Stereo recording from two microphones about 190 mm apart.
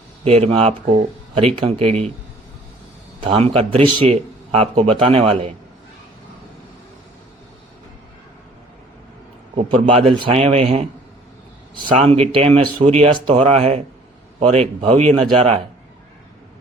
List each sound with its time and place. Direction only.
0.3 s a man's voice: 30° right (ahead or behind)
3.2 s a man's voice: 30° right (ahead or behind)
9.6 s a man's voice: 30° right (ahead or behind)